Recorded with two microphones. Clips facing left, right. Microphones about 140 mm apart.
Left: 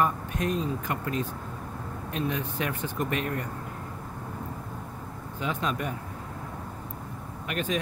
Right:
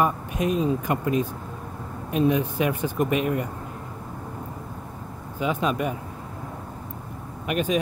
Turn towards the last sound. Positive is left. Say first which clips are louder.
# right 6 dB
turn(degrees=-15)  # may be behind; listen again after turning